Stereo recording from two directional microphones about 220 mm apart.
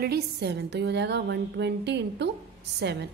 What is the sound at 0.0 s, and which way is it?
A woman's voice, 45° right (ahead or behind).